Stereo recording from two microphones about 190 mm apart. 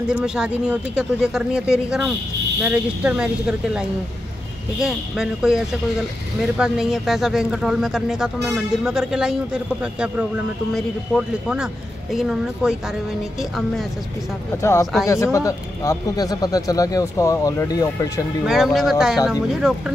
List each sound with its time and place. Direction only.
0.1 s speech: 5° right (ahead or behind)
14.6 s speech: 15° left (ahead or behind)
18.4 s speech: centre (ahead or behind)